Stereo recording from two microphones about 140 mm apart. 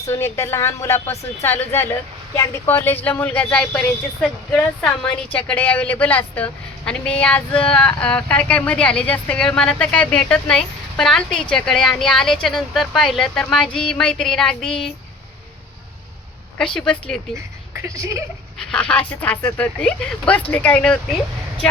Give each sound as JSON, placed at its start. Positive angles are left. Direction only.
{"t": 0.1, "sound": "a woman's voice", "side_deg": 20}
{"t": 16.6, "sound": "speech", "side_deg": 5}
{"t": 17.8, "sound": "speech", "side_deg": -20}
{"t": 18.6, "sound": "speech", "side_deg": 5}